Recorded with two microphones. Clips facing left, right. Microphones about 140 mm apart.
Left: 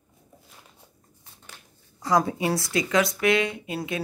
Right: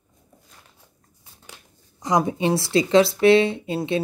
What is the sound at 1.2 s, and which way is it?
Speech, 15° right (ahead or behind).